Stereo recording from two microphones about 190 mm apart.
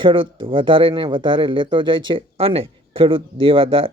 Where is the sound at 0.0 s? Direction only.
25° right (ahead or behind).